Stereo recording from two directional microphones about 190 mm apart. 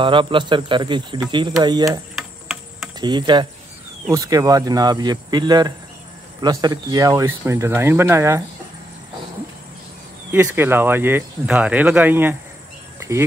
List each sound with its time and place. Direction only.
0.0 s speech: 25° right (ahead or behind)
2.1 s a sound: centre (ahead or behind)
3.0 s speech: 25° right (ahead or behind)
10.3 s speech: 10° right (ahead or behind)